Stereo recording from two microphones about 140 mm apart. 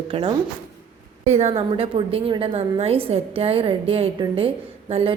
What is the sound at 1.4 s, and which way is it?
A woman's voice, 45° right (ahead or behind).